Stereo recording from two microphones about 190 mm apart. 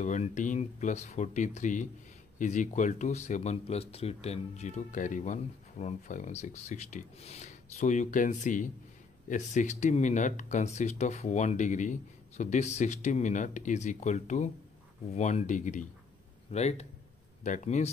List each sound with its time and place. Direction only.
0.0 s speech: 40° left (ahead or behind)